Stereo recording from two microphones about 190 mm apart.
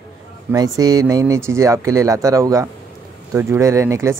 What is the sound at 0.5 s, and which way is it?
Speech, 20° right (ahead or behind).